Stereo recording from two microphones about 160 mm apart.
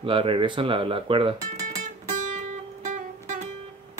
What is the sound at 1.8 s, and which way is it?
Music, 50° right (ahead or behind).